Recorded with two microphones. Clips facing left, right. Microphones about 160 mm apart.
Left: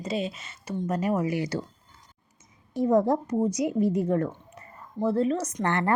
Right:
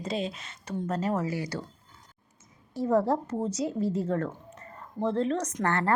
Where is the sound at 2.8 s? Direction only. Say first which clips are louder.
Left 3 dB; 15° left (ahead or behind).